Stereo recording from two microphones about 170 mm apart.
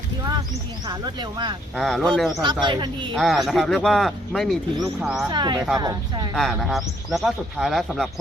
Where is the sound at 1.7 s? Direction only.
Centre (ahead or behind).